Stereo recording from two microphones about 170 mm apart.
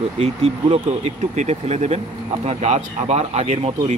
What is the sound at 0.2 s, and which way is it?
Speech, 35° right (ahead or behind).